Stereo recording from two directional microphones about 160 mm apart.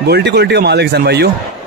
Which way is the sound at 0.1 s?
90° right.